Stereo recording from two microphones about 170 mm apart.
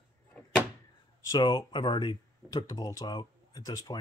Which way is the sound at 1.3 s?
25° left (ahead or behind).